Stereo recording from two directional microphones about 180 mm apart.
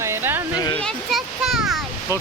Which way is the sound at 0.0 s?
15° right (ahead or behind).